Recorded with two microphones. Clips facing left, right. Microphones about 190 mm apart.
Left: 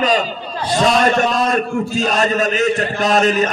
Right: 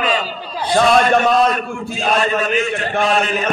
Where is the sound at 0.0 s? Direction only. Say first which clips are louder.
Left 3 dB; 40° left (ahead or behind).